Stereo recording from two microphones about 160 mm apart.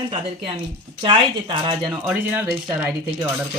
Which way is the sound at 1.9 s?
10° right (ahead or behind).